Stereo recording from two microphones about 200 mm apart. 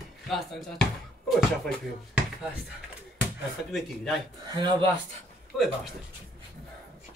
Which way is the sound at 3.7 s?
Centre (ahead or behind).